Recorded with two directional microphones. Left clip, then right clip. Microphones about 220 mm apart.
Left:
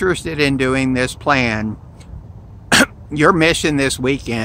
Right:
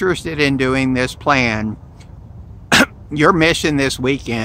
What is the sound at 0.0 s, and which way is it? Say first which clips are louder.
Speech: even; 5° right (ahead or behind).